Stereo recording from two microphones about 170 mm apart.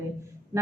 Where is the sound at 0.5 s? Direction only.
15° right (ahead or behind).